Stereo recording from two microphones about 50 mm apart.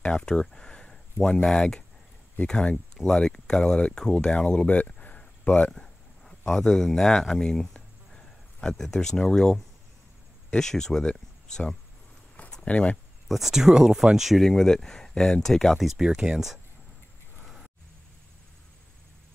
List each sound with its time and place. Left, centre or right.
0.0 s speech: centre
4.6 s a sound: left
10.5 s speech: centre
13.3 s speech: centre
14.4 s speech: centre
15.9 s speech: centre